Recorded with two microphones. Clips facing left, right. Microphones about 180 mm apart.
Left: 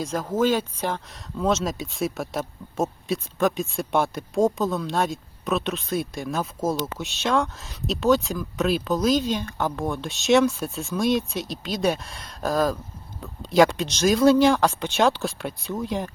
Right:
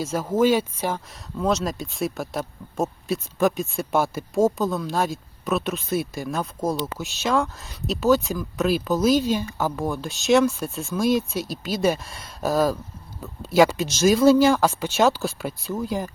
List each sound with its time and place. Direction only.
0.0 s speech: 5° right (ahead or behind)